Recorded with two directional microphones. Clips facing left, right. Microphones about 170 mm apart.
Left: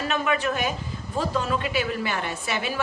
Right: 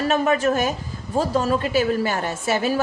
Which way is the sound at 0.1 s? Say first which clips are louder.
Right 6 dB; 45° right (ahead or behind).